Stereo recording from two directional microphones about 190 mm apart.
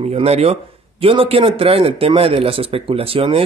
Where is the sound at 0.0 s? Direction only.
30° right (ahead or behind).